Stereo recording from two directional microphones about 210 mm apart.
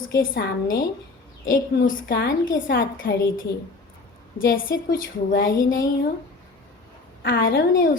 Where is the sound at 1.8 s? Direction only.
45° left (ahead or behind).